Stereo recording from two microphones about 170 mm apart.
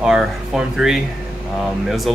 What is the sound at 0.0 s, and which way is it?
Speech, 5° right (ahead or behind).